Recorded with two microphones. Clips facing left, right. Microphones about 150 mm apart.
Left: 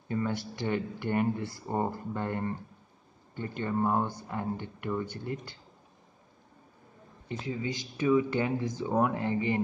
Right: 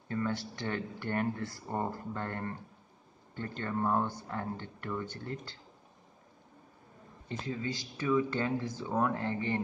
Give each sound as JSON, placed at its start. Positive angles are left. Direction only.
{"t": 0.1, "sound": "speech", "side_deg": 15}
{"t": 7.2, "sound": "speech", "side_deg": 15}